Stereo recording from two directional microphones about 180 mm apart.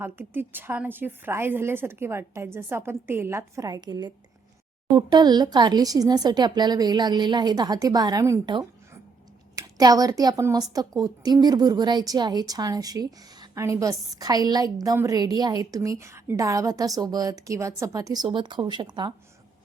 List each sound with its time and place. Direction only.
0.0 s a woman's voice: 10° right (ahead or behind)